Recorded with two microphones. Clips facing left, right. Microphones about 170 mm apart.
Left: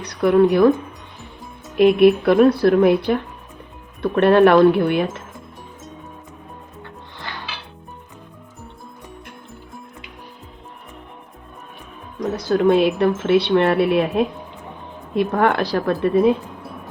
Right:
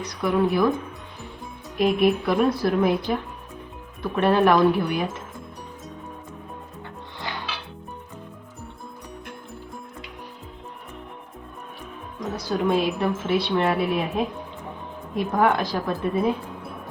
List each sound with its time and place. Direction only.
0.0 s speech: 65° left (ahead or behind)
1.8 s speech: 65° left (ahead or behind)
12.2 s speech: 60° left (ahead or behind)